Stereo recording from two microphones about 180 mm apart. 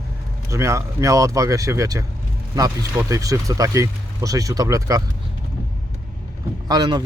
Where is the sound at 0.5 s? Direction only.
15° right (ahead or behind).